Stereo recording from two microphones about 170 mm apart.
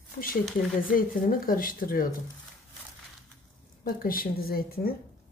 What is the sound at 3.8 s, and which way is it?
Speech, 60° left (ahead or behind).